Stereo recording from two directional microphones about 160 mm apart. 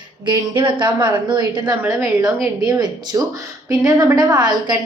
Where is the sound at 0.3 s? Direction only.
30° right (ahead or behind).